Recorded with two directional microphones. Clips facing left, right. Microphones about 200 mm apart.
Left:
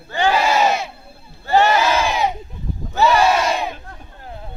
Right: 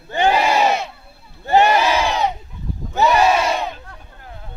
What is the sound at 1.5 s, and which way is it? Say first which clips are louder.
Crowd: right 1 dB; 15° right (ahead or behind).